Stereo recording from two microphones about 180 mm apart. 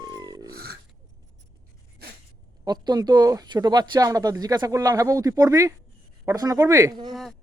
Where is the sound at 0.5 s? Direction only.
60° right (ahead or behind).